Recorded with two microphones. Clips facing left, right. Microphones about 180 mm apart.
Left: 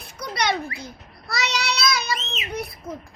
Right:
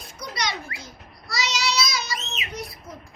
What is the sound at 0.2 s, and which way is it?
Speech, 60° left (ahead or behind).